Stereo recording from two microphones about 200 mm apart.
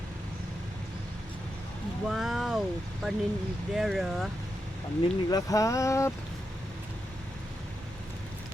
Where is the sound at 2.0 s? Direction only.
Centre (ahead or behind).